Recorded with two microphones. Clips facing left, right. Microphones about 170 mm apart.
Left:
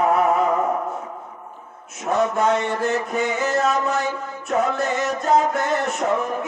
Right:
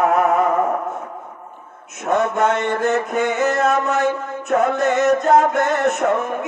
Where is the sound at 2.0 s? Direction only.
60° right (ahead or behind).